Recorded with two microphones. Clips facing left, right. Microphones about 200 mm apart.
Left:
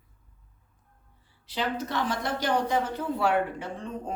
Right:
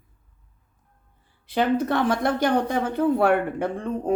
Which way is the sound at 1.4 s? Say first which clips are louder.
Right 9 dB; 55° right (ahead or behind).